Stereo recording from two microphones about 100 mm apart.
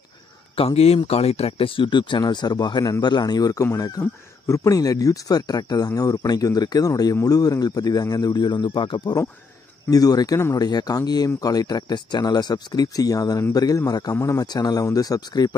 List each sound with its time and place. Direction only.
0.6 s speech: 80° left; by 15.5 s 40° left (ahead or behind)